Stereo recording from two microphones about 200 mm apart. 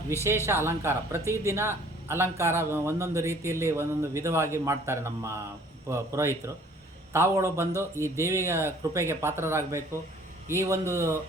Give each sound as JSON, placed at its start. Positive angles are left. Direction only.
{"t": 0.4, "sound": "speech", "side_deg": -15}